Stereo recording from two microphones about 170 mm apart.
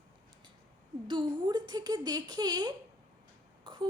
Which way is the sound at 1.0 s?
25° right (ahead or behind).